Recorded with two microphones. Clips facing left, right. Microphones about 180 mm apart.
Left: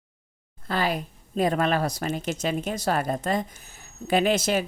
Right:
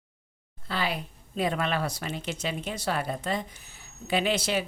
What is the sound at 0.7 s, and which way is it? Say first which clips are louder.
Speech: left 5 dB; 45° left (ahead or behind).